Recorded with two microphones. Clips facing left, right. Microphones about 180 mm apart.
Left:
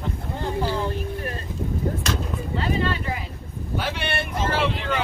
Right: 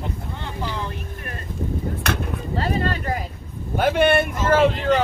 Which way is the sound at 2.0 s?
60° right (ahead or behind).